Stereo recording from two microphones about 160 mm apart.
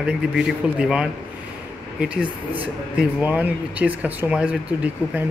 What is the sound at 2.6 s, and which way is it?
Speech, 10° right (ahead or behind).